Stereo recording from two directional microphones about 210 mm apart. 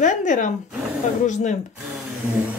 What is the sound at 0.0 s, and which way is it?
Speech, 35° left (ahead or behind).